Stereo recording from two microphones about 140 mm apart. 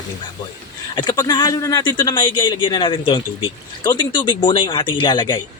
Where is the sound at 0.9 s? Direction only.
30° left (ahead or behind).